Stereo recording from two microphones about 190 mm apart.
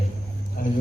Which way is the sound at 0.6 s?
45° left (ahead or behind).